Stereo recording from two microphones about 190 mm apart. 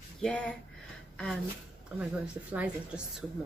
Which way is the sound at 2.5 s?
5° right (ahead or behind).